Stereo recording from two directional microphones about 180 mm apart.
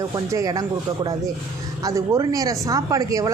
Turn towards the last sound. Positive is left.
turn(degrees=-20)  # may be behind; listen again after turning